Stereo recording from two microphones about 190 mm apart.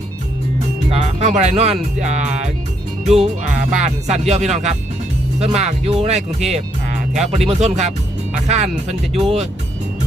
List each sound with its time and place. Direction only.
0.9 s speech: 35° right (ahead or behind)